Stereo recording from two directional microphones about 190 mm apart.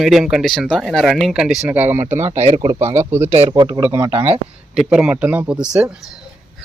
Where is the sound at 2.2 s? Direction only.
35° right (ahead or behind).